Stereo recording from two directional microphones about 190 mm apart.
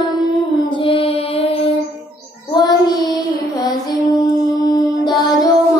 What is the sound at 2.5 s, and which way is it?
Child singing, 20° left (ahead or behind).